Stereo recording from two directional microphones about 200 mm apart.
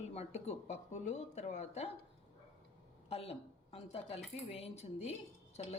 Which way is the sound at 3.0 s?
30° left (ahead or behind).